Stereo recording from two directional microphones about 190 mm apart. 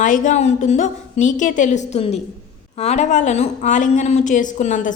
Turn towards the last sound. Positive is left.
turn(degrees=40)  # may be behind; listen again after turning